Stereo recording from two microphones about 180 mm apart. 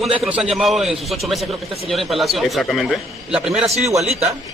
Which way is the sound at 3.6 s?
35° right (ahead or behind).